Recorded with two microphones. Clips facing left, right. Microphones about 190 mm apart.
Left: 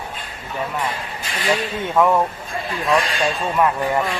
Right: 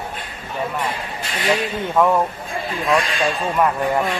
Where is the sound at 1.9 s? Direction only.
Centre (ahead or behind).